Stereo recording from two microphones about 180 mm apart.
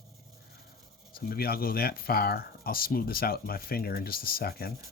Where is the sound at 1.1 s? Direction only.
55° left (ahead or behind).